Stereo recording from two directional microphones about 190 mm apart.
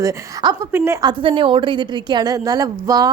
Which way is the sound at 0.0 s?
15° right (ahead or behind).